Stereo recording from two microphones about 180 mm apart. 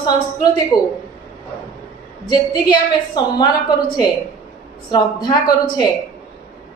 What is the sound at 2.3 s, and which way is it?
A man's voice, 25° left (ahead or behind).